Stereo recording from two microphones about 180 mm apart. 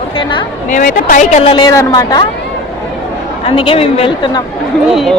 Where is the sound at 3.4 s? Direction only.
30° left (ahead or behind).